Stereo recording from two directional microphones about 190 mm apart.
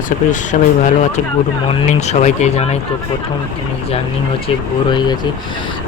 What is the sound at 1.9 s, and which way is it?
Speech, 40° left (ahead or behind).